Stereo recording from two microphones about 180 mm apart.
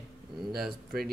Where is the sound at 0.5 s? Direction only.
Centre (ahead or behind).